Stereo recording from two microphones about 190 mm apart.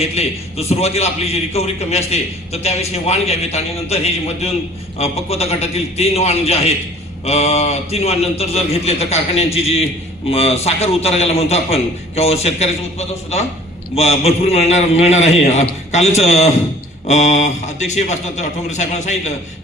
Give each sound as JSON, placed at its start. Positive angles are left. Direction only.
{"t": 0.0, "sound": "a man's voice", "side_deg": 35}